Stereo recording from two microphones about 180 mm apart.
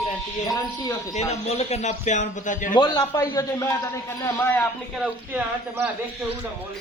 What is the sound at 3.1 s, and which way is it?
A man's voice, 20° left (ahead or behind).